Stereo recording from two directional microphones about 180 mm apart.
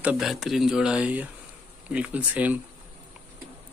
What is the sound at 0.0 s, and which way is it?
Speech, 5° right (ahead or behind).